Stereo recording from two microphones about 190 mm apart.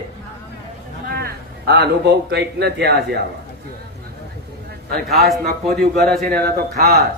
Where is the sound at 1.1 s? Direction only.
60° right (ahead or behind).